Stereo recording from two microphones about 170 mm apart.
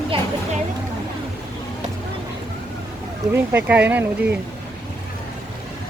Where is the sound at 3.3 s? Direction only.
10° right (ahead or behind).